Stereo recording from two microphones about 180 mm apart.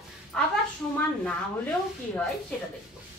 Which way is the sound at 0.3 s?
5° left (ahead or behind).